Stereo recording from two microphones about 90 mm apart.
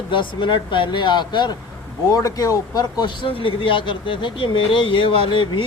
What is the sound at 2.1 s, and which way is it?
Speech, 40° left (ahead or behind).